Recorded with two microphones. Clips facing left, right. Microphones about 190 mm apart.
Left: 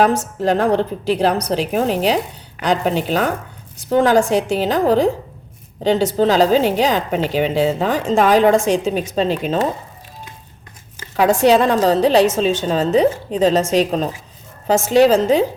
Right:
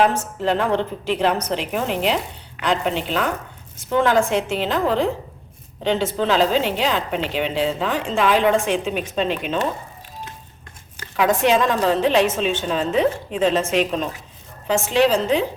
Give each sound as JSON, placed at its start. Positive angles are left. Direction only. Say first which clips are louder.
{"t": 0.0, "sound": "a woman's voice", "louder": "left 3 dB", "side_deg": 40}
{"t": 11.2, "sound": "a woman's voice", "louder": "left 4 dB", "side_deg": 35}